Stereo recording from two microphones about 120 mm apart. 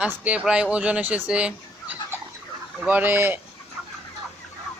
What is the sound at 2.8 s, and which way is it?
Speech, 15° right (ahead or behind).